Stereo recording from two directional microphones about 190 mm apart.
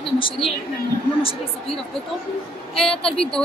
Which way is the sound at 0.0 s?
25° left (ahead or behind).